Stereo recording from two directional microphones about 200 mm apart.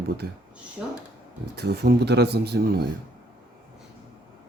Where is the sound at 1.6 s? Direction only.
55° right (ahead or behind).